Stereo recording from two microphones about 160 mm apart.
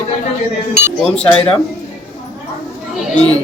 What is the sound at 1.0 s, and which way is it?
Speech, 5° left (ahead or behind).